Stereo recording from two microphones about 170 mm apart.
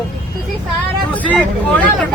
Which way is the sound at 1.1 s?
10° left (ahead or behind).